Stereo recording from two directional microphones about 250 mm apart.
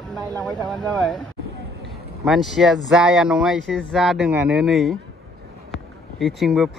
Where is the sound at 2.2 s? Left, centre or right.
Centre.